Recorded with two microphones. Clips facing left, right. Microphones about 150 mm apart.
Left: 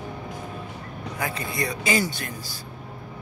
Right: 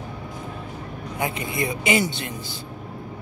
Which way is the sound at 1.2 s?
25° right (ahead or behind).